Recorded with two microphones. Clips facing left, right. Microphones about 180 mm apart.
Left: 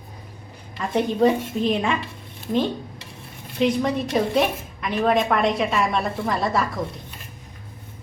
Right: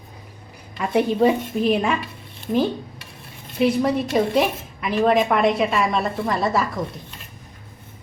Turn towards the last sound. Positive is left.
turn(degrees=0)  # may be behind; listen again after turning